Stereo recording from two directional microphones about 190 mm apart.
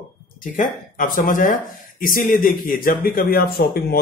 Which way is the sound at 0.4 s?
45° left (ahead or behind).